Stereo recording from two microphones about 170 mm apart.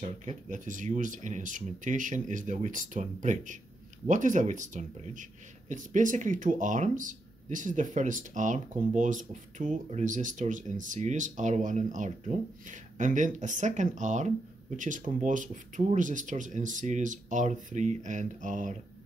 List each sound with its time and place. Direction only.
0.2 s speech: 45° right (ahead or behind)